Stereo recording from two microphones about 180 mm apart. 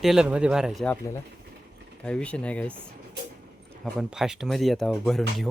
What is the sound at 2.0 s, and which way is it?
Speech, 5° left (ahead or behind).